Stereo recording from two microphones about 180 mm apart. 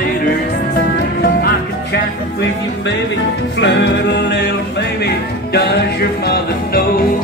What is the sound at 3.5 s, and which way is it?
Music, 80° left.